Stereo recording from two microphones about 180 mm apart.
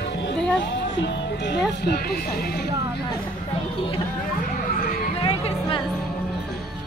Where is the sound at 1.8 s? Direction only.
60° left (ahead or behind).